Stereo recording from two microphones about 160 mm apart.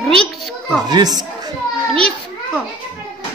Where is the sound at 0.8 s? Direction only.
25° right (ahead or behind).